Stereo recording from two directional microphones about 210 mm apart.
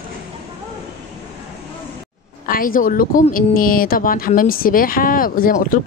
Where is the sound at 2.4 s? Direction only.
40° left (ahead or behind).